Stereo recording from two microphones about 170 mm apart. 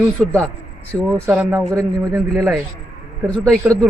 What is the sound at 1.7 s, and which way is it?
Speech, 20° right (ahead or behind).